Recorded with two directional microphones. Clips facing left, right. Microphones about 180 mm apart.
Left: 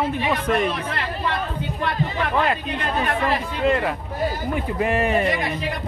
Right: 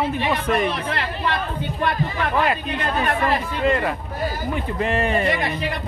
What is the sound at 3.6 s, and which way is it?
A man's voice, centre (ahead or behind).